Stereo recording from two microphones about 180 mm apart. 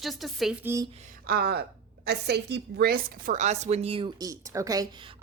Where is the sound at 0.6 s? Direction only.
15° right (ahead or behind).